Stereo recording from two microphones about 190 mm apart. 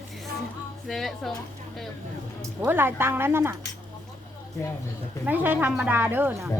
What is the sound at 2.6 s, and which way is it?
Speech, 10° right (ahead or behind).